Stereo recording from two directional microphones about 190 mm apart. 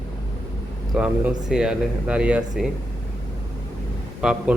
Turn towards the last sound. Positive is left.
turn(degrees=0)  # may be behind; listen again after turning